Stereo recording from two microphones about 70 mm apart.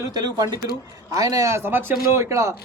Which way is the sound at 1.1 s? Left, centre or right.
Right.